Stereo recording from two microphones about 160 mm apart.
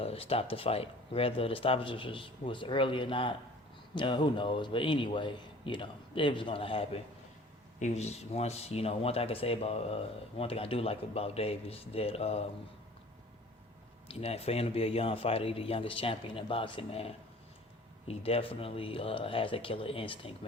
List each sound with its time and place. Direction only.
0.0 s speech: 40° left (ahead or behind)
14.1 s speech: 40° left (ahead or behind)